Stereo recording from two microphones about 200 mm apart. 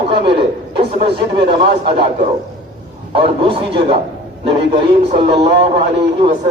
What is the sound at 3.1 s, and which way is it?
A man's voice, 25° right (ahead or behind).